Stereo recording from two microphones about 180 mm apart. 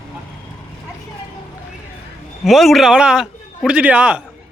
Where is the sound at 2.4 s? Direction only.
Centre (ahead or behind).